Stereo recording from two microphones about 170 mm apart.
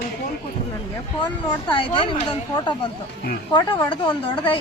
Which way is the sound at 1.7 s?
30° left (ahead or behind).